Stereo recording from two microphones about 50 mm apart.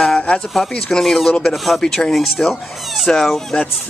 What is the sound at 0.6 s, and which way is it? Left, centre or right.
Speech, centre.